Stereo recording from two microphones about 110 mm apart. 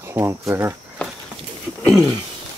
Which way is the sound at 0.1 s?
25° right (ahead or behind).